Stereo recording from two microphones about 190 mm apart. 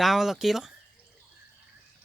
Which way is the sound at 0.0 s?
Centre (ahead or behind).